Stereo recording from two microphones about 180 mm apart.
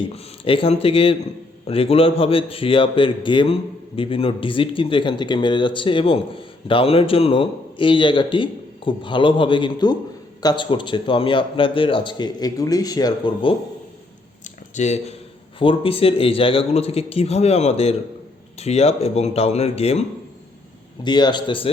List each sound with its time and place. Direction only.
0.1 s a man's voice: 30° left (ahead or behind)
14.4 s a sound: 40° left (ahead or behind)
15.5 s a man's voice: 30° left (ahead or behind)
21.0 s a man's voice: 25° left (ahead or behind)